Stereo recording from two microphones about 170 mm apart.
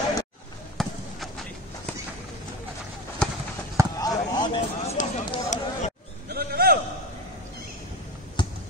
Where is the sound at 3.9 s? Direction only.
20° left (ahead or behind).